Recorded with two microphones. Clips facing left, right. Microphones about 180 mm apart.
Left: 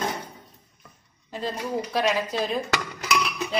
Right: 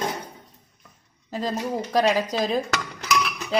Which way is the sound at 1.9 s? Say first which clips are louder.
Right 5 dB; 40° right (ahead or behind).